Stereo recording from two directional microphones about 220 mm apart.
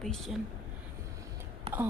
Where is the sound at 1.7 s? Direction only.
25° right (ahead or behind).